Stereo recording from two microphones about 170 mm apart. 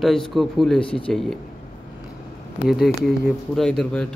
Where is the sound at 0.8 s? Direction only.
30° left (ahead or behind).